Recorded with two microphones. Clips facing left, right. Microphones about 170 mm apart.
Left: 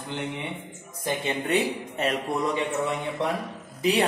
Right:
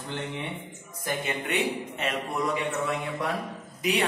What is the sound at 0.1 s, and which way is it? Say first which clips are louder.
Mantra: left 2 dB; 25° left (ahead or behind).